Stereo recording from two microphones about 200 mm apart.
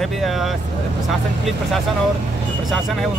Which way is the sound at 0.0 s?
Centre (ahead or behind).